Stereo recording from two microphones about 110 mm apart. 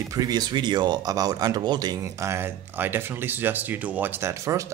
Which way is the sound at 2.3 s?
20° right (ahead or behind).